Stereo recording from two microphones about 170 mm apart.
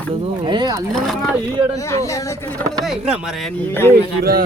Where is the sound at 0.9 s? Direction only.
Centre (ahead or behind).